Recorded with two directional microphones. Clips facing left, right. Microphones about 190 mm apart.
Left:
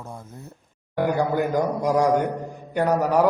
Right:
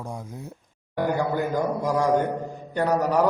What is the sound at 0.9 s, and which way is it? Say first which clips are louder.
A man's voice: left 2 dB; 15° left (ahead or behind).